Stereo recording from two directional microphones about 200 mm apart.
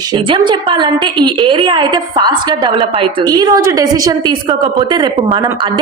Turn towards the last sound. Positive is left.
turn(degrees=-20)  # may be behind; listen again after turning